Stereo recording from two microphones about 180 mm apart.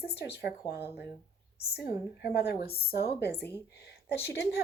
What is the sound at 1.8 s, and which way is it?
Speech, 65° left (ahead or behind).